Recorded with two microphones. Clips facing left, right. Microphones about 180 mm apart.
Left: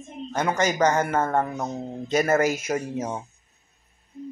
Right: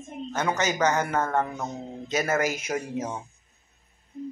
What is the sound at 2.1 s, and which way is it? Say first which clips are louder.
A man's voice: left 5 dB; 10° left (ahead or behind).